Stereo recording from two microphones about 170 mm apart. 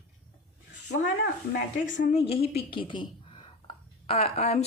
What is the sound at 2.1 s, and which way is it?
Speech, 35° left (ahead or behind).